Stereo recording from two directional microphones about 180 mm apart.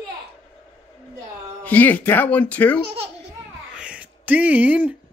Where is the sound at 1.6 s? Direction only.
10° left (ahead or behind).